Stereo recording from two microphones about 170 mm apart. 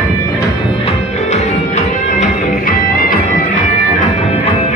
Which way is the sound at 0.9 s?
40° left (ahead or behind).